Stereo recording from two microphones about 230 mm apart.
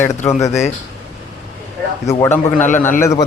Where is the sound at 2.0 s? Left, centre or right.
Centre.